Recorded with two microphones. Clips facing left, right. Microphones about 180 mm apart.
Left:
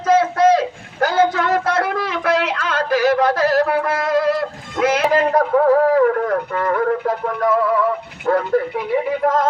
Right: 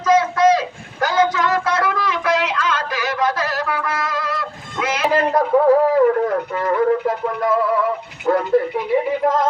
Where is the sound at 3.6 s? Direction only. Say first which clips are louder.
Left 4 dB; 35° left (ahead or behind).